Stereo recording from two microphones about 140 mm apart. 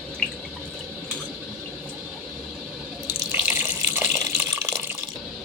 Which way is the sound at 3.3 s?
10° right (ahead or behind).